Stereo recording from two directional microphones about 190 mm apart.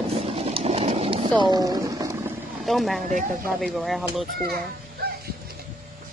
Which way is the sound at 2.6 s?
Centre (ahead or behind).